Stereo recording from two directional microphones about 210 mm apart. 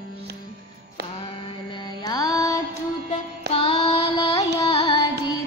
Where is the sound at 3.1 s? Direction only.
30° left (ahead or behind).